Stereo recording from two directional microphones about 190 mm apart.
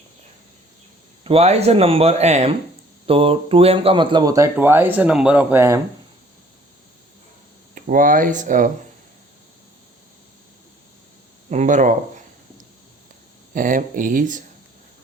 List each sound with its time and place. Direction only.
1.2 s speech: 30° right (ahead or behind); by 5.8 s 15° right (ahead or behind)
7.8 s speech: 45° right (ahead or behind)
11.4 s speech: 40° right (ahead or behind)
13.5 s speech: 45° right (ahead or behind)